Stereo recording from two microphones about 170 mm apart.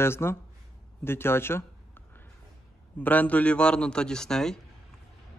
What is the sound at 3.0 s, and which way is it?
A man's voice, 10° left (ahead or behind).